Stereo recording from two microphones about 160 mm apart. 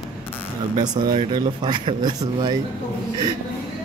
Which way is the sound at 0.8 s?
25° right (ahead or behind).